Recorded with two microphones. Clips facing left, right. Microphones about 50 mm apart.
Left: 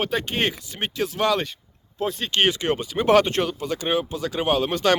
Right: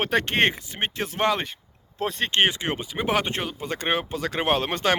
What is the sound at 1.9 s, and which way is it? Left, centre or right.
Speech, right.